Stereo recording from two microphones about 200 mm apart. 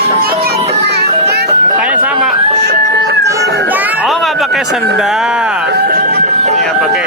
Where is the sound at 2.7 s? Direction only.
55° right (ahead or behind).